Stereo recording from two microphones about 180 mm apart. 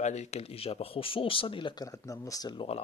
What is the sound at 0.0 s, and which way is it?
Speech, 40° left (ahead or behind).